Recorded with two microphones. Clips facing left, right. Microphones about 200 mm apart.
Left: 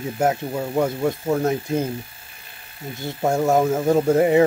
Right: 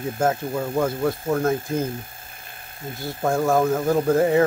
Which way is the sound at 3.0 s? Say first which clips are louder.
Left 1 dB; 20° left (ahead or behind).